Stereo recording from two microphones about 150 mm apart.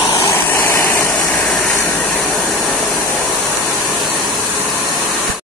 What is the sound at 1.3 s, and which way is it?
Vehicle, 5° left (ahead or behind).